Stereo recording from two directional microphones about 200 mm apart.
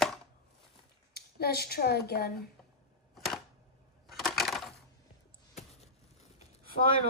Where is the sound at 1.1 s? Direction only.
50° left (ahead or behind).